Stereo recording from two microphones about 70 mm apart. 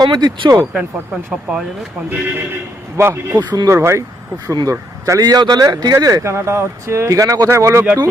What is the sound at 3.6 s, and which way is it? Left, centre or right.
Speech, right.